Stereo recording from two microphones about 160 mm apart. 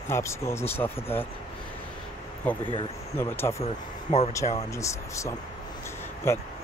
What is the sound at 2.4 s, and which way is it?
Speech, 10° left (ahead or behind).